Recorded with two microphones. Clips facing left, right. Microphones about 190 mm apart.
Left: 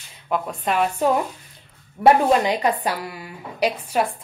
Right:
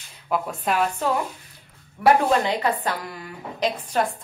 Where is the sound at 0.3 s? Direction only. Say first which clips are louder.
Left 1 dB; 5° right (ahead or behind).